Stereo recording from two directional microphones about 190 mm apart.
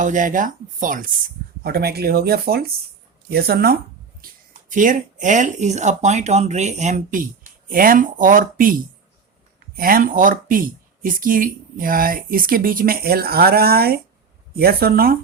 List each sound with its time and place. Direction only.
0.0 s speech: 45° right (ahead or behind)
1.6 s speech: 55° right (ahead or behind)
4.2 s a sound: 50° right (ahead or behind)
4.7 s speech: 45° right (ahead or behind)